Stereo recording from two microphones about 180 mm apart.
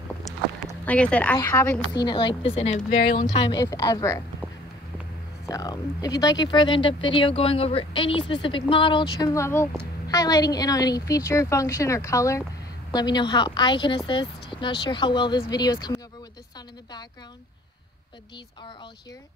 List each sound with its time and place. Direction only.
0.8 s a woman's voice: 5° left (ahead or behind)
2.0 s speech: 25° left (ahead or behind)
3.3 s speech: 25° left (ahead or behind)
5.5 s a woman's voice: 20° left (ahead or behind)